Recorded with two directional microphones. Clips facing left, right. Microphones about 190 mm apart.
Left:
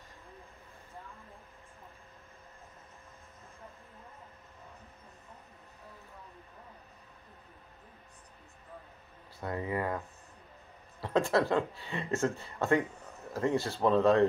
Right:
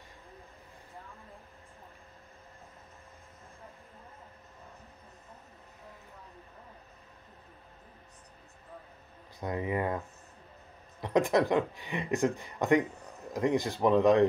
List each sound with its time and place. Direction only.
9.4 s speech: 20° right (ahead or behind)